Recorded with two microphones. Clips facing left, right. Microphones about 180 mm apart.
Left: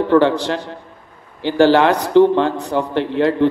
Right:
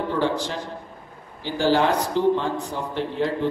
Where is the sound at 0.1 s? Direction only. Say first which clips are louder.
Left 12 dB; 75° left (ahead or behind).